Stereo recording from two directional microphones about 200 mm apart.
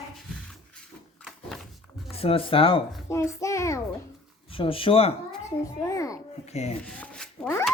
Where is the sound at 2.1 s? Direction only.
30° left (ahead or behind).